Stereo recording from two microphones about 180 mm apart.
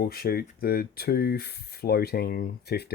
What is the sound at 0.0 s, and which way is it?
Speech, 60° left (ahead or behind).